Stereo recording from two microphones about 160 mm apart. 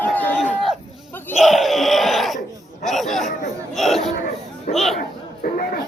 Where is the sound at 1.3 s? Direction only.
Centre (ahead or behind).